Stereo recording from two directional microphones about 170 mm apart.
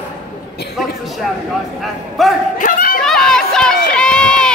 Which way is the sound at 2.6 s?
60° left (ahead or behind).